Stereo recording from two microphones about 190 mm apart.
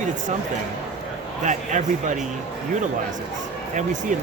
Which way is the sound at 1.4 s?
40° right (ahead or behind).